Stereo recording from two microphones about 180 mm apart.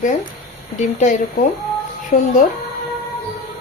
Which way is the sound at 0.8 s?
40° left (ahead or behind).